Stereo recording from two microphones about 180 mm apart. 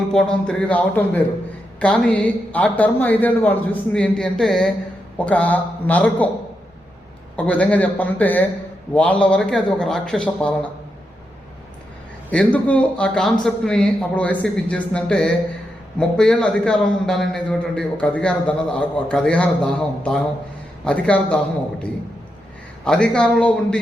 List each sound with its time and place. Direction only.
0.1 s a man's voice: 5° left (ahead or behind)
7.3 s a man's voice: 5° left (ahead or behind)
12.3 s a man's voice: 5° left (ahead or behind)
20.8 s speech: 5° left (ahead or behind)
22.8 s a man's voice: 5° left (ahead or behind)